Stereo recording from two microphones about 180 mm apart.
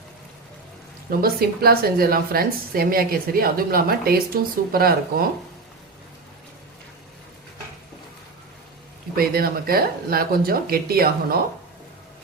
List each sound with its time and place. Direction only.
1.2 s a woman's voice: 60° right (ahead or behind)
9.1 s a woman's voice: 55° right (ahead or behind)